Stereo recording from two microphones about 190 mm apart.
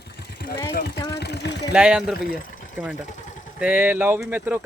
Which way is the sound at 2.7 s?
5° right (ahead or behind).